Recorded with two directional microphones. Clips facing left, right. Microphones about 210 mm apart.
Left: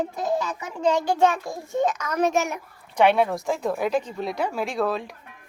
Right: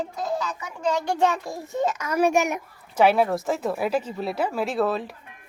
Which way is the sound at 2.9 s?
5° right (ahead or behind).